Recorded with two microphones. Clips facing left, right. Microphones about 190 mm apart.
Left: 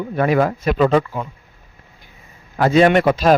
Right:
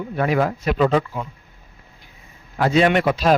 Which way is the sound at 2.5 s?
50° left (ahead or behind).